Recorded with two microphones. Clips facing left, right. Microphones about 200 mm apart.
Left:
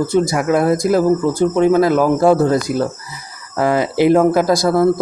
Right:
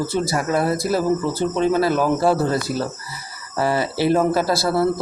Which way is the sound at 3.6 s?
15° left (ahead or behind).